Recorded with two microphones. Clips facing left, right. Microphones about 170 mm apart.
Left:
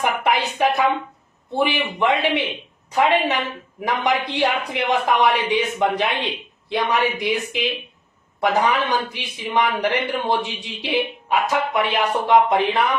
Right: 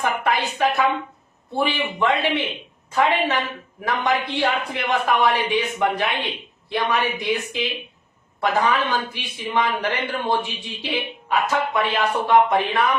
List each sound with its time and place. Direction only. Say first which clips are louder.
0.0 s a man's voice: left 2 dB; 20° left (ahead or behind)